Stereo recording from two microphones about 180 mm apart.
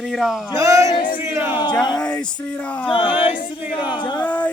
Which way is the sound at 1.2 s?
15° right (ahead or behind).